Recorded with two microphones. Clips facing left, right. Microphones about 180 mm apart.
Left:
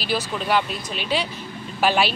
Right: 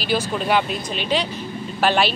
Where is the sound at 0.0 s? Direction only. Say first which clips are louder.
Right 3 dB; centre (ahead or behind).